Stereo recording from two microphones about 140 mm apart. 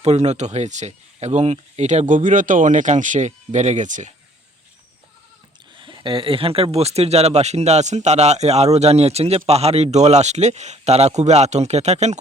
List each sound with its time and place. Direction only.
0.0 s speech: 50° right (ahead or behind)
5.7 s speech: 35° right (ahead or behind); by 12.2 s 55° right (ahead or behind)